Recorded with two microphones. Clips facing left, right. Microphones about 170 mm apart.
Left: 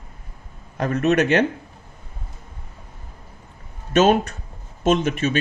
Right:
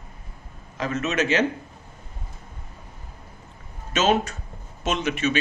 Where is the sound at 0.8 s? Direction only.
55° left (ahead or behind).